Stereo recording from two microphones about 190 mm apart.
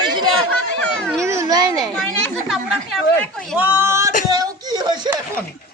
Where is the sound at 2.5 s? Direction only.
Centre (ahead or behind).